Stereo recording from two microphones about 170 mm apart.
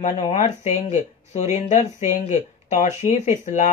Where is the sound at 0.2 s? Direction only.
45° left (ahead or behind).